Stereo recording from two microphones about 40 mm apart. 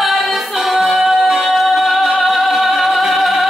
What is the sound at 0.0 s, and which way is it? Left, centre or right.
Music, centre.